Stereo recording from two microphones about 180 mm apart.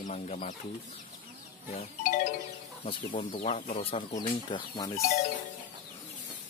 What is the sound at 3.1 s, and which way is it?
Speech, 50° left (ahead or behind).